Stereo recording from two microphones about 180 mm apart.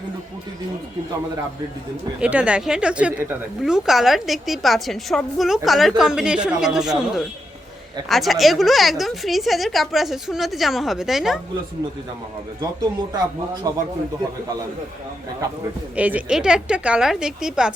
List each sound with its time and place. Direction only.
2.2 s a woman's voice: 5° right (ahead or behind)
13.7 s speech: 20° right (ahead or behind)
16.0 s a woman's voice: 10° right (ahead or behind)